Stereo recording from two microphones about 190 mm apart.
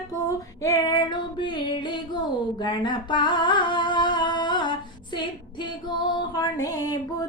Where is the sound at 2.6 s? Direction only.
25° left (ahead or behind).